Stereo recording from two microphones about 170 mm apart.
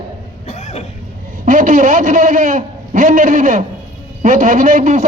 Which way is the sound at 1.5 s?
50° right (ahead or behind).